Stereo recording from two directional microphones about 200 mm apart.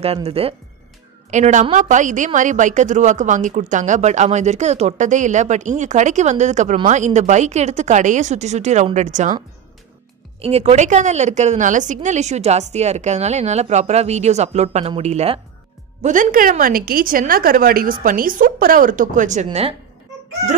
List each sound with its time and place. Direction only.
0.0 s a woman's voice: 30° right (ahead or behind)
10.4 s a woman's voice: 30° right (ahead or behind)